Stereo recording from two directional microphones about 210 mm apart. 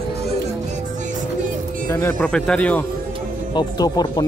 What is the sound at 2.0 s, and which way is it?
Speech, 5° left (ahead or behind).